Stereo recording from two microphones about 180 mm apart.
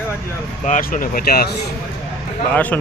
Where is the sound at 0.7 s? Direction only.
45° left (ahead or behind).